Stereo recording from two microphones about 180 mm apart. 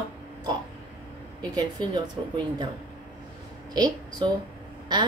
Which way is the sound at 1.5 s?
25° right (ahead or behind).